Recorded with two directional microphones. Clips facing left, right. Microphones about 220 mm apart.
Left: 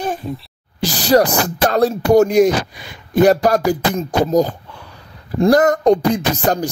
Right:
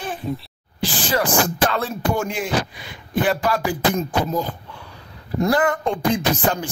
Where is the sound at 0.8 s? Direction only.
40° left (ahead or behind).